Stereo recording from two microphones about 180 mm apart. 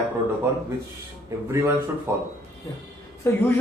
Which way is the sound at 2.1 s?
15° right (ahead or behind).